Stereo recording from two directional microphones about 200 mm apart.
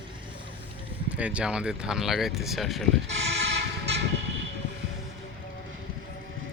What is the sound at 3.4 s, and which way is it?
Vehicle, 60° right (ahead or behind).